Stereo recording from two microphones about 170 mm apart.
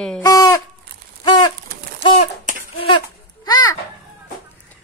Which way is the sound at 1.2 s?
25° left (ahead or behind).